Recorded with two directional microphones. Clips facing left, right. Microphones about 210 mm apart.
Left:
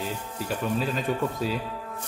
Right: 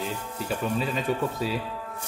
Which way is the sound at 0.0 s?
Centre (ahead or behind).